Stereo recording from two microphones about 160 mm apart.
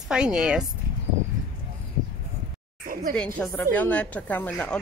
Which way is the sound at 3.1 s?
10° left (ahead or behind).